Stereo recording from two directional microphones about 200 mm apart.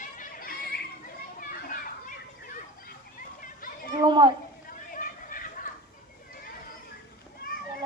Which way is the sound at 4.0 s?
25° right (ahead or behind).